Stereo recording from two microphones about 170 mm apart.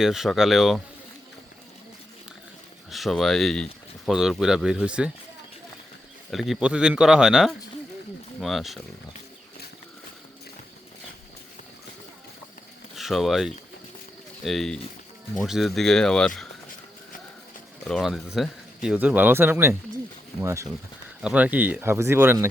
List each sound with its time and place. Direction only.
0.0 s speech: centre (ahead or behind)
2.9 s speech: centre (ahead or behind)
6.3 s speech: centre (ahead or behind)
13.0 s speech: centre (ahead or behind)
17.8 s speech: centre (ahead or behind); by 20.7 s 15° right (ahead or behind)
21.2 s speech: 5° right (ahead or behind)